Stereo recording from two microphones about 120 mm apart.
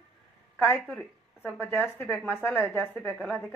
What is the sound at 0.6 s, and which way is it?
A woman's voice, 15° left (ahead or behind).